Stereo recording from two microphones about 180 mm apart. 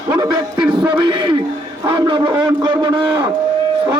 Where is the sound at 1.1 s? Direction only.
25° right (ahead or behind).